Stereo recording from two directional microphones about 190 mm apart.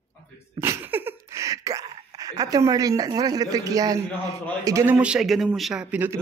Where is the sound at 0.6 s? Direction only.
10° right (ahead or behind).